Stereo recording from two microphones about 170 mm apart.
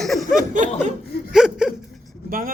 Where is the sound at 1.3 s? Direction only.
5° right (ahead or behind).